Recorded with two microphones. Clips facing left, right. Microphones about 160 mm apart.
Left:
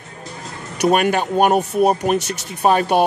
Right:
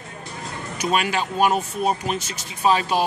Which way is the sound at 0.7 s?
60° left (ahead or behind).